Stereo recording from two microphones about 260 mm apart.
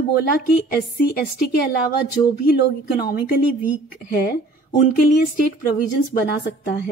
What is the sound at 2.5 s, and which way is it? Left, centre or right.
A woman's voice, left.